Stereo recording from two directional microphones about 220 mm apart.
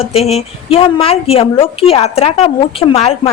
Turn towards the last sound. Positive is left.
turn(degrees=25)  # may be behind; listen again after turning